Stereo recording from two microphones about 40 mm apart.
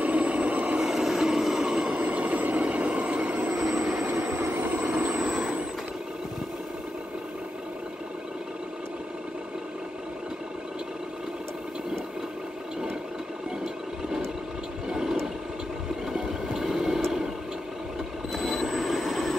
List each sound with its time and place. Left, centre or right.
0.0 s vehicle: right
0.7 s train: centre
1.7 s train: right
2.0 s vehicle: right
3.5 s vehicle: centre
4.4 s train: right
4.8 s vehicle: right
14.9 s toilet flush: centre
16.1 s boat: centre
18.4 s a sound: centre